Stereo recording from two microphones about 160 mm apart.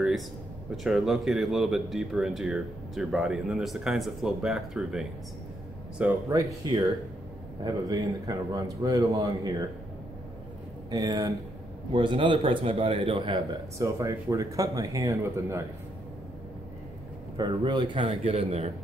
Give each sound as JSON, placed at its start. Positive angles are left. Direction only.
{"t": 0.7, "sound": "speech", "side_deg": -5}
{"t": 6.2, "sound": "a man's voice", "side_deg": -20}
{"t": 10.9, "sound": "a man's voice", "side_deg": -25}
{"t": 13.7, "sound": "a man's voice", "side_deg": -20}
{"t": 17.4, "sound": "a man's voice", "side_deg": -30}
{"t": 18.3, "sound": "speech", "side_deg": -40}